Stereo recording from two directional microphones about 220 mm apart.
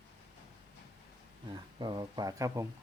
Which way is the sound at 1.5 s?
20° right (ahead or behind).